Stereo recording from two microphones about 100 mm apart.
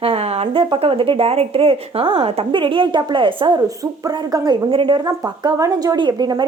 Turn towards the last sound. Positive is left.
turn(degrees=-45)  # may be behind; listen again after turning